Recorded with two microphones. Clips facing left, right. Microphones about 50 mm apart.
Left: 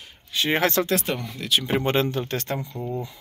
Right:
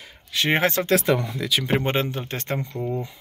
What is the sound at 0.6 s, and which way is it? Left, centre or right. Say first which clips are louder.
Speech: right 2 dB; right.